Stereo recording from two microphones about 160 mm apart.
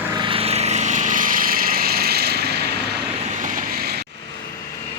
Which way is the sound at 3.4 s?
60° right (ahead or behind).